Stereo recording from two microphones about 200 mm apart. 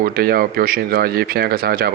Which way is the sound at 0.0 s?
50° right (ahead or behind).